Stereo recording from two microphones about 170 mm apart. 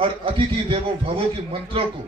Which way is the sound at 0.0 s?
30° right (ahead or behind).